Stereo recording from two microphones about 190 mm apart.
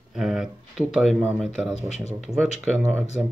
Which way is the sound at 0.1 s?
Centre (ahead or behind).